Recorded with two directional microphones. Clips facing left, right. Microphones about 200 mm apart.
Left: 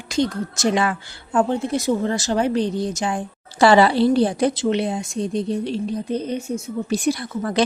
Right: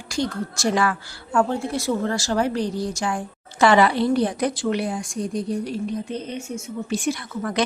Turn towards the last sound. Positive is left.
turn(degrees=30)  # may be behind; listen again after turning